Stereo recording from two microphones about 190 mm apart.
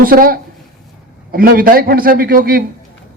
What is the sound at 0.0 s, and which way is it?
A man's voice, 50° right (ahead or behind).